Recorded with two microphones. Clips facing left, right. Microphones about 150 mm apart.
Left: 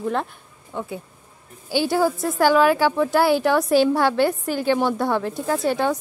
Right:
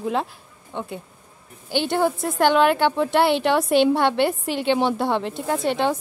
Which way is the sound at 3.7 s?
25° right (ahead or behind).